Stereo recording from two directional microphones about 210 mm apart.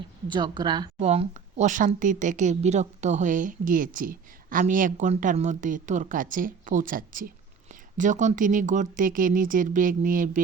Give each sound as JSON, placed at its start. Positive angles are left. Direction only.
{"t": 0.3, "sound": "speech", "side_deg": -20}